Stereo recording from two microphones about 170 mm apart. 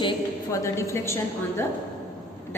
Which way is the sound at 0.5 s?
15° left (ahead or behind).